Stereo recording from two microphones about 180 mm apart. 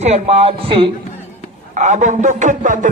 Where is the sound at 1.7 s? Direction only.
40° right (ahead or behind).